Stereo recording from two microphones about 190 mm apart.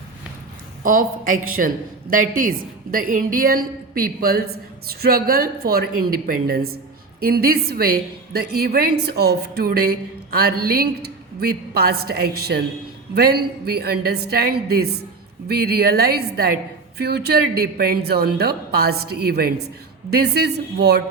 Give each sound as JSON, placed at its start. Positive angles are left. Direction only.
{"t": 0.8, "sound": "a woman's voice", "side_deg": -45}